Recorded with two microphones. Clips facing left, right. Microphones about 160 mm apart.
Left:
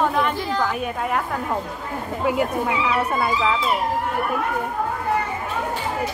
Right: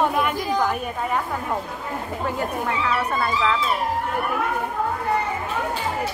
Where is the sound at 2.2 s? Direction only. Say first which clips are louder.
Left 5 dB; 10° left (ahead or behind).